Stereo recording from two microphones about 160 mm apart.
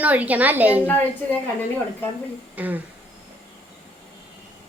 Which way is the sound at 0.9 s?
10° left (ahead or behind).